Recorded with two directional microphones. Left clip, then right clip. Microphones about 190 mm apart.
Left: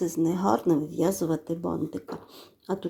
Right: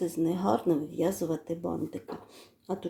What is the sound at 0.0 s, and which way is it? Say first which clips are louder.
Speech: left 3 dB; 20° left (ahead or behind).